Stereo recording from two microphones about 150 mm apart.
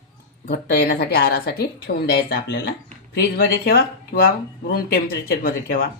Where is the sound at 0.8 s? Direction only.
90° left.